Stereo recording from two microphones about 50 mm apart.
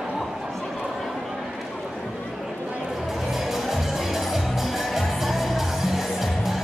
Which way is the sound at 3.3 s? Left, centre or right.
Centre.